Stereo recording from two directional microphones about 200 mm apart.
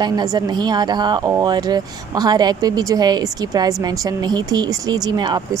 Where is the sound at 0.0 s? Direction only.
20° right (ahead or behind).